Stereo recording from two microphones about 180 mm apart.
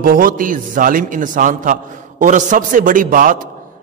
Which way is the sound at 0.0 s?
50° right (ahead or behind).